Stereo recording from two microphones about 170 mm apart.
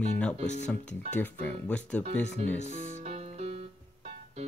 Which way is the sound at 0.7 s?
10° left (ahead or behind).